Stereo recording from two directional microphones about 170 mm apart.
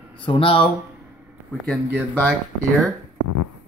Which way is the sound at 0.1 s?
30° left (ahead or behind).